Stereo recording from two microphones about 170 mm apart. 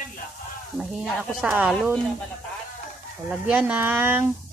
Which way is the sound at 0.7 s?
Centre (ahead or behind).